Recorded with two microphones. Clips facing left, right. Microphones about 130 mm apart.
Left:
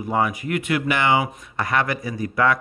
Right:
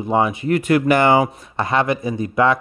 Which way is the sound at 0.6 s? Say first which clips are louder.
Right 7 dB; 40° right (ahead or behind).